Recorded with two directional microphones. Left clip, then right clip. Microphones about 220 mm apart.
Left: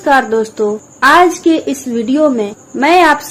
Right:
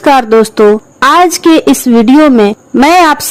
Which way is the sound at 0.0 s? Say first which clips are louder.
Right 5 dB; 50° right (ahead or behind).